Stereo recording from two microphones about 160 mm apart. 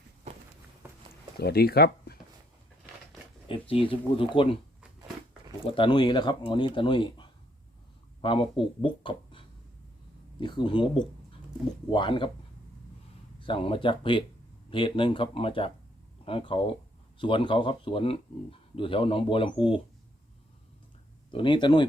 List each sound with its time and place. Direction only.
0.8 s a sound: 10° right (ahead or behind)
1.4 s speech: 85° left
3.4 s speech: 35° left (ahead or behind)
5.6 s speech: 30° left (ahead or behind)
10.4 s speech: 30° left (ahead or behind)
13.4 s speech: 35° left (ahead or behind)
21.2 s speech: 30° left (ahead or behind)